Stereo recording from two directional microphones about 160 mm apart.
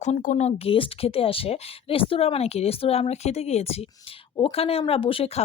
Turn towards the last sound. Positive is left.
turn(degrees=35)  # may be behind; listen again after turning